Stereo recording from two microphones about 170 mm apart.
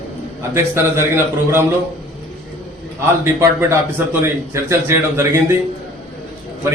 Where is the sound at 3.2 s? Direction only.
15° right (ahead or behind).